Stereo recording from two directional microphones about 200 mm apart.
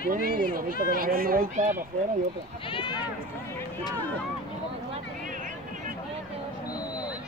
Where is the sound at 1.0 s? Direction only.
45° right (ahead or behind).